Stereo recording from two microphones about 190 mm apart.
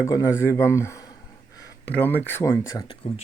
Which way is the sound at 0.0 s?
15° left (ahead or behind).